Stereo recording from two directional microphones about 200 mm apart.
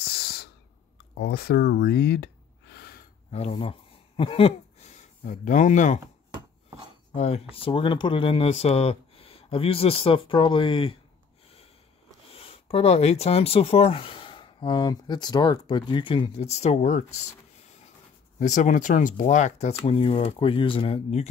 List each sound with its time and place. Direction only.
0.0 s a sound: 50° left (ahead or behind)
1.1 s speech: 50° left (ahead or behind)
3.3 s speech: 30° left (ahead or behind)
7.2 s speech: 30° left (ahead or behind)
12.3 s speech: 30° left (ahead or behind)
18.4 s speech: 35° left (ahead or behind)